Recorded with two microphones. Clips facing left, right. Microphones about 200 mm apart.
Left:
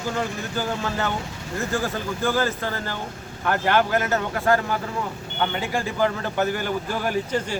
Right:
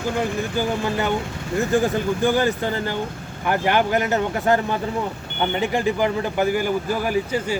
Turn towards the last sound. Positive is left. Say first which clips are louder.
# right 3 dB
turn(degrees=-10)  # may be behind; listen again after turning